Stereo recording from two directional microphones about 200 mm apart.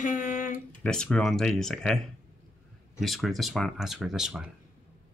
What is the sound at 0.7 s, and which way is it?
Speech, 5° left (ahead or behind).